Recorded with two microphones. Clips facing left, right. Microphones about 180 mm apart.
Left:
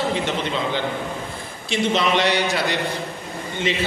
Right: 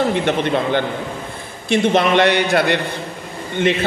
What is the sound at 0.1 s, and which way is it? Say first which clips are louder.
A man's voice: right 6 dB; 60° right (ahead or behind).